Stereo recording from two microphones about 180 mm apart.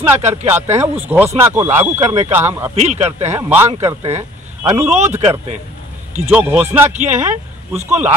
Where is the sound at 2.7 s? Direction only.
40° right (ahead or behind).